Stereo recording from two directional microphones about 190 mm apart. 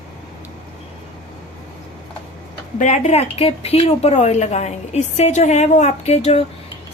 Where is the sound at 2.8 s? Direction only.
40° left (ahead or behind).